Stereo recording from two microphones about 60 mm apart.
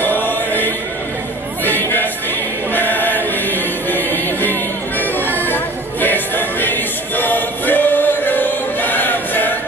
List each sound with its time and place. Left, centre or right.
0.0 s choir: left
1.6 s music: left
2.7 s choir: left
5.4 s music: left